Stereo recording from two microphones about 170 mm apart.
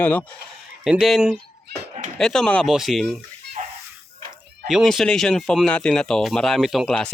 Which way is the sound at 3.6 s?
50° right (ahead or behind).